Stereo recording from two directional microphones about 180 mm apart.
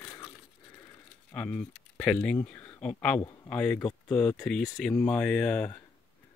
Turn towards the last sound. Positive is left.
turn(degrees=5)  # may be behind; listen again after turning